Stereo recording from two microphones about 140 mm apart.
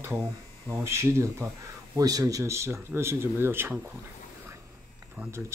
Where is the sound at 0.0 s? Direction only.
20° right (ahead or behind).